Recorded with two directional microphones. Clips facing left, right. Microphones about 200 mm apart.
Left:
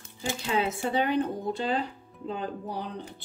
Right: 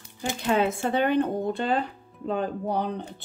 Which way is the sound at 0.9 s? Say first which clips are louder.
Right 3 dB; 55° right (ahead or behind).